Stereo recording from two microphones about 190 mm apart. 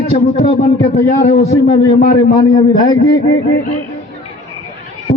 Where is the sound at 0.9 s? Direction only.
35° left (ahead or behind).